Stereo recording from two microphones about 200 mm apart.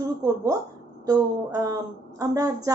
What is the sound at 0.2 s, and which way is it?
A woman's voice, 15° right (ahead or behind).